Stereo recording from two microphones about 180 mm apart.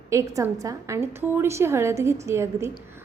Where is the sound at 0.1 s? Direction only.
15° right (ahead or behind).